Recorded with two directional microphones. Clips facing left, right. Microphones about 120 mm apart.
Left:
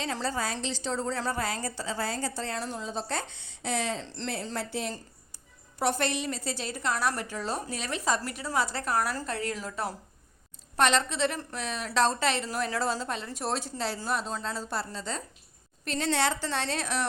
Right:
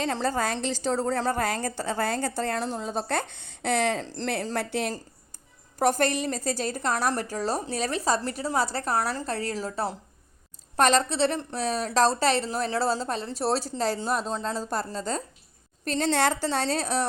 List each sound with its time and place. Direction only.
0.0 s a woman's voice: 50° right (ahead or behind)
4.0 s a woman's voice: 40° right (ahead or behind)
4.5 s a woman's voice: 65° right (ahead or behind)
5.8 s a woman's voice: 45° right (ahead or behind)
10.8 s a woman's voice: 40° right (ahead or behind)